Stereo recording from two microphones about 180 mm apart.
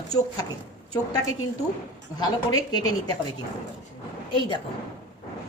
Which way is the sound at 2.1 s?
20° left (ahead or behind).